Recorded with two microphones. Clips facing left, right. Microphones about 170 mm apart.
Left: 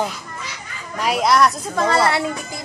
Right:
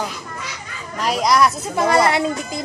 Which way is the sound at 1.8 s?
15° right (ahead or behind).